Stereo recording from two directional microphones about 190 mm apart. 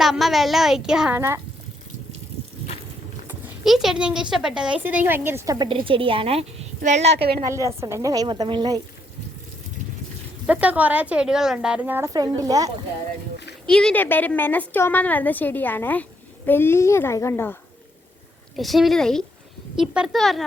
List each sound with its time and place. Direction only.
0.0 s a woman's voice: centre (ahead or behind)
3.2 s a woman's voice: 5° right (ahead or behind); by 7.2 s 35° right (ahead or behind)
7.4 s speech: 15° right (ahead or behind)
10.4 s speech: 5° right (ahead or behind)
13.7 s a woman's voice: 5° left (ahead or behind)
18.5 s a woman's voice: centre (ahead or behind)